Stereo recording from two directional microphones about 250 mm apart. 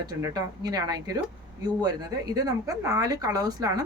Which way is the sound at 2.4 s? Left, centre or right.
Centre.